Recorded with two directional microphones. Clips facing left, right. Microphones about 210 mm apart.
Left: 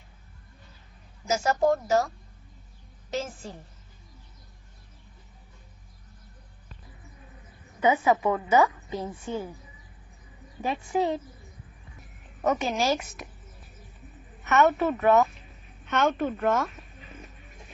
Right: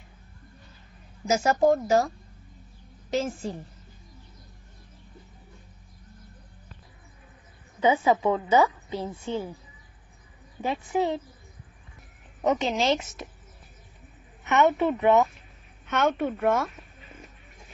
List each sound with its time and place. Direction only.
1.2 s speech: 15° right (ahead or behind)
7.8 s a woman's voice: 25° right (ahead or behind)
10.6 s a woman's voice: 20° right (ahead or behind)
12.4 s a woman's voice: 20° right (ahead or behind)
14.5 s speech: 15° right (ahead or behind)
15.9 s speech: 5° right (ahead or behind)